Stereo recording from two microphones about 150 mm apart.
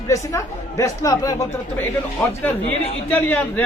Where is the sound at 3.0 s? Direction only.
10° left (ahead or behind).